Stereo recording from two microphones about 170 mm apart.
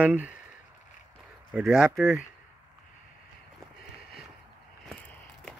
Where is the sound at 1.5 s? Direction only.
5° right (ahead or behind).